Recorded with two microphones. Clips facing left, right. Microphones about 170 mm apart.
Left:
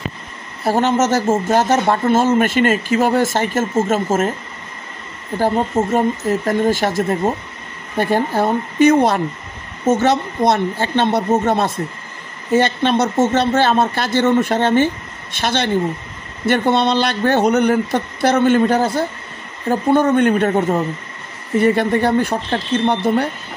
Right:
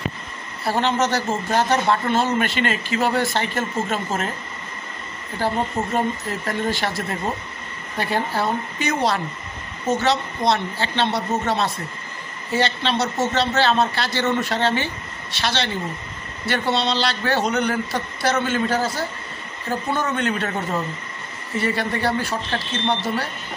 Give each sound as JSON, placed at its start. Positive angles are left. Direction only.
{"t": 0.7, "sound": "speech", "side_deg": 45}
{"t": 5.4, "sound": "speech", "side_deg": 45}